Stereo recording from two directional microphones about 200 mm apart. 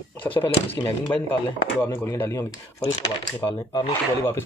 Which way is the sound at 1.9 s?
10° left (ahead or behind).